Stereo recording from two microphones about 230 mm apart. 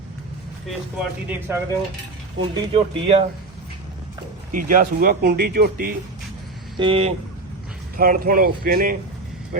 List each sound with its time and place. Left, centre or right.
1.3 s speech: centre
2.4 s speech: right
4.5 s speech: right
6.7 s speech: right
7.9 s speech: right